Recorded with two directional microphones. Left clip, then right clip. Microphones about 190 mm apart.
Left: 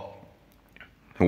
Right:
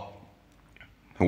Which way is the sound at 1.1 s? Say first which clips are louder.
Left 2 dB; 20° left (ahead or behind).